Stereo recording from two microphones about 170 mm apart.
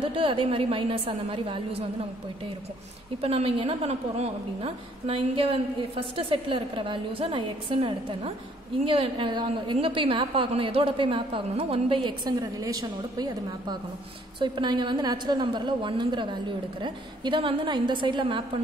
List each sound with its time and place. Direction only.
0.0 s a woman's voice: 30° right (ahead or behind)
3.2 s a woman's voice: 35° right (ahead or behind)